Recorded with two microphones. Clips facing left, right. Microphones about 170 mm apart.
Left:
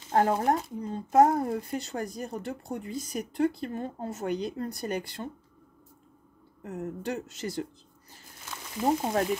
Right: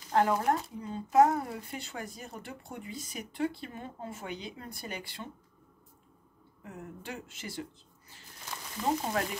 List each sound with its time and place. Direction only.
0.1 s speech: 45° left (ahead or behind)
6.6 s speech: 40° left (ahead or behind)
8.8 s speech: 10° left (ahead or behind)